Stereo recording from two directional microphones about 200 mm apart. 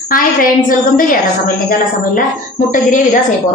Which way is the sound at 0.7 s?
45° left (ahead or behind).